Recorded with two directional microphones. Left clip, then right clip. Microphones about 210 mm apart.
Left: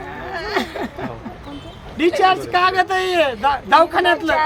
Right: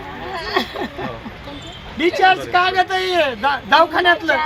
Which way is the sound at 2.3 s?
30° left (ahead or behind).